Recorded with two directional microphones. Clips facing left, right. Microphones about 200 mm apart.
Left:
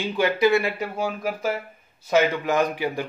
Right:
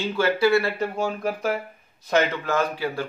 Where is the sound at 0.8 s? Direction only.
5° left (ahead or behind).